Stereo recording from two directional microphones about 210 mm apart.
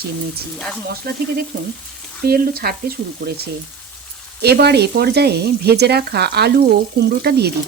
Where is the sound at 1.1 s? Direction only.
45° right (ahead or behind).